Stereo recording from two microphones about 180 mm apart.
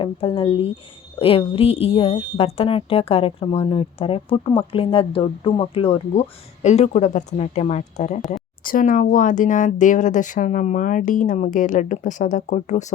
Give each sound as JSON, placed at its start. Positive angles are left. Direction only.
{"t": 0.0, "sound": "a woman's voice", "side_deg": 30}
{"t": 8.3, "sound": "speech", "side_deg": 50}